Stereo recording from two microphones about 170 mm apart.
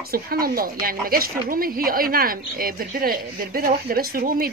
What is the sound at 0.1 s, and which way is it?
A woman's voice, 60° right (ahead or behind).